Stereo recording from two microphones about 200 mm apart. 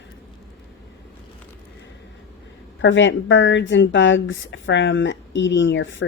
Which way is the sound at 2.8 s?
70° left (ahead or behind).